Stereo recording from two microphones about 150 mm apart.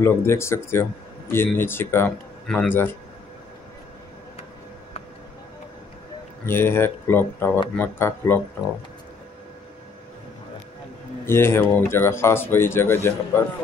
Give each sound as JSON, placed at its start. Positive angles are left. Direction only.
{"t": 0.0, "sound": "speech", "side_deg": 15}
{"t": 6.4, "sound": "speech", "side_deg": 15}
{"t": 11.2, "sound": "speech", "side_deg": 15}